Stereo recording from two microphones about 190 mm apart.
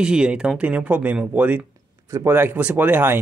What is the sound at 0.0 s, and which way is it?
Speech, 5° right (ahead or behind).